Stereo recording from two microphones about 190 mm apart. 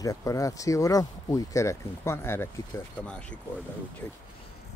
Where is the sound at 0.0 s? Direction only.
15° left (ahead or behind).